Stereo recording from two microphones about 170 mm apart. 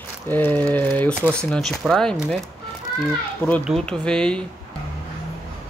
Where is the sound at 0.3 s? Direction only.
10° left (ahead or behind).